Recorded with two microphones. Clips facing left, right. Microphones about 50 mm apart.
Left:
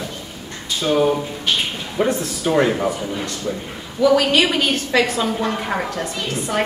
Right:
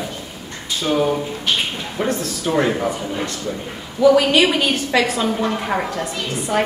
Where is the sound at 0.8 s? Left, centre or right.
Centre.